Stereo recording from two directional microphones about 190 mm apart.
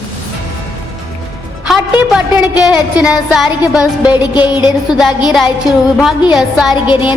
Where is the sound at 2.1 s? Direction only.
5° right (ahead or behind).